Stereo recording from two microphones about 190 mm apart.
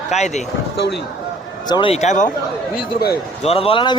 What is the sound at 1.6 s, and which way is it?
Speech, 25° left (ahead or behind).